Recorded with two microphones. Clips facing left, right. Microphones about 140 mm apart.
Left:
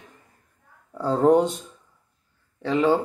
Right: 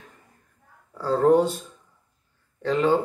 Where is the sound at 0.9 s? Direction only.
20° left (ahead or behind).